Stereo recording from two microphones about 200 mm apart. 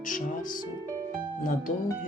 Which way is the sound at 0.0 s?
40° left (ahead or behind).